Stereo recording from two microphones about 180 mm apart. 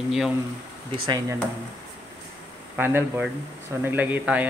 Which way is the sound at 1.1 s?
20° right (ahead or behind).